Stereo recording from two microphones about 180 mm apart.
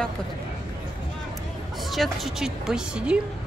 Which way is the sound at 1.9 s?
Centre (ahead or behind).